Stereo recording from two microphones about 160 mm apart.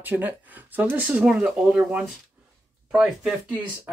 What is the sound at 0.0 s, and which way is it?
A man's voice, 10° right (ahead or behind).